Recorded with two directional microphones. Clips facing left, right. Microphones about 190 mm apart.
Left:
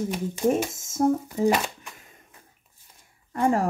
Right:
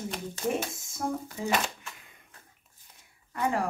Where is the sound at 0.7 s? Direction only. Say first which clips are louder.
Left 10 dB; 45° left (ahead or behind).